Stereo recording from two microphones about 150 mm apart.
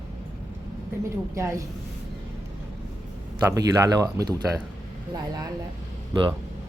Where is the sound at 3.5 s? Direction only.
25° right (ahead or behind).